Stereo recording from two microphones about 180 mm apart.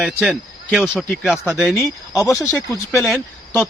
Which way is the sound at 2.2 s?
15° left (ahead or behind).